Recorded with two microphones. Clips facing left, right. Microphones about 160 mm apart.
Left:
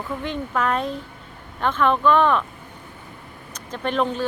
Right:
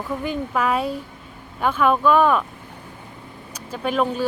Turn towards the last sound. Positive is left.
turn(degrees=-10)  # may be behind; listen again after turning